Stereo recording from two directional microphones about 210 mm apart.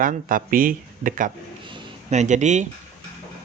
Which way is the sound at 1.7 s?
35° right (ahead or behind).